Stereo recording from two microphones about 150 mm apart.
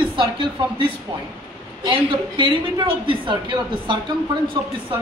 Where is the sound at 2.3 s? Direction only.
35° right (ahead or behind).